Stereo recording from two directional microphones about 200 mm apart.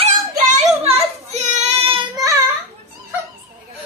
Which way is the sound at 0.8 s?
30° right (ahead or behind).